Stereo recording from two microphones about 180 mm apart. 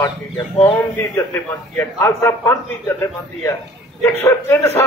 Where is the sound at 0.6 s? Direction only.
20° left (ahead or behind).